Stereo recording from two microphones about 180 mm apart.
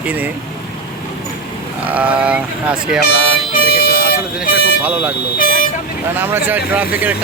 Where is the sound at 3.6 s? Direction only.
55° left (ahead or behind).